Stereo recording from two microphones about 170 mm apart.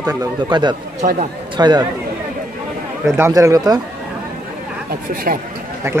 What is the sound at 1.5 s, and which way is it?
Speech, 25° right (ahead or behind).